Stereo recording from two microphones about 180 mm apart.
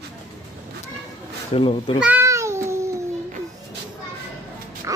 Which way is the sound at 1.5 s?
30° left (ahead or behind).